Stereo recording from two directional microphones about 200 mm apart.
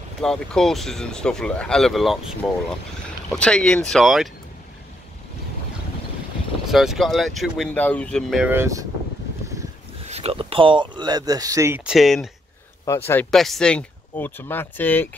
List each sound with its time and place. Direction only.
0.2 s speech: 5° left (ahead or behind)
6.7 s speech: centre (ahead or behind)
10.0 s speech: 30° right (ahead or behind); by 12.3 s centre (ahead or behind)
12.8 s speech: 15° left (ahead or behind)